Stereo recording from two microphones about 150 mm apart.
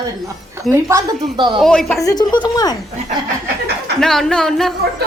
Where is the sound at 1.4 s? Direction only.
30° right (ahead or behind).